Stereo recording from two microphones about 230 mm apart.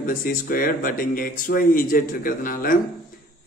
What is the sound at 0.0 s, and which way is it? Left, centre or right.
Speech, left.